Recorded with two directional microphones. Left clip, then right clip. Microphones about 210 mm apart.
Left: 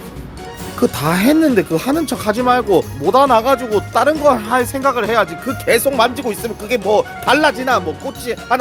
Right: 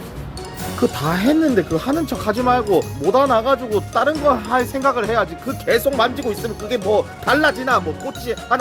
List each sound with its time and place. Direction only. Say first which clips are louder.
0.8 s speech: left 4 dB; 30° left (ahead or behind)